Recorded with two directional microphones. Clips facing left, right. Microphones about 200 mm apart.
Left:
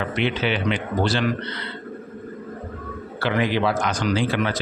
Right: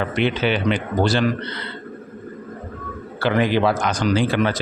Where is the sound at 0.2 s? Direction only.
45° right (ahead or behind).